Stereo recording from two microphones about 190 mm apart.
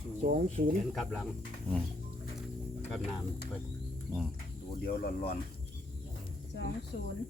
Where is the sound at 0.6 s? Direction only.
50° right (ahead or behind).